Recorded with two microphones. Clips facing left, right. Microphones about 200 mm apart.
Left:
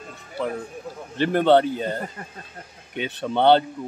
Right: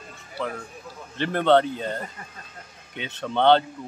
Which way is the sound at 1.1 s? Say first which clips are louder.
Left 2 dB; 10° left (ahead or behind).